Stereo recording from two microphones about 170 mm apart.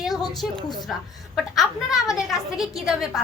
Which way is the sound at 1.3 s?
Centre (ahead or behind).